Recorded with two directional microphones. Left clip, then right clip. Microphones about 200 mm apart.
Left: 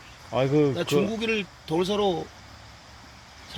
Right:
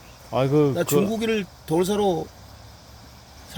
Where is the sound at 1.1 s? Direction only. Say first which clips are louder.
Right 3 dB; 40° right (ahead or behind).